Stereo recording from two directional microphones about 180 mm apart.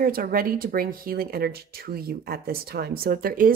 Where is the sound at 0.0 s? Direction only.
55° right (ahead or behind).